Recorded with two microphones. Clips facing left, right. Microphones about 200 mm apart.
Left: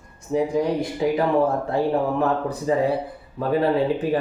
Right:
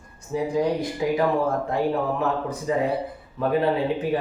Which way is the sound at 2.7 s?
35° left (ahead or behind).